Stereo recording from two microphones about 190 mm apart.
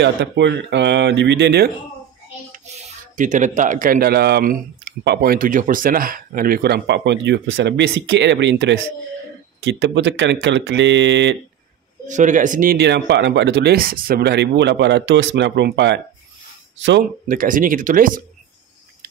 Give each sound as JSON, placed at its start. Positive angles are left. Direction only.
{"t": 0.0, "sound": "speech", "side_deg": -65}
{"t": 2.5, "sound": "speech", "side_deg": -40}
{"t": 12.1, "sound": "speech", "side_deg": -40}
{"t": 17.3, "sound": "speech", "side_deg": -45}